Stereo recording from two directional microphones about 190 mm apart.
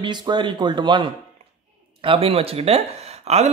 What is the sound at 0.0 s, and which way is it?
Speech, 25° right (ahead or behind).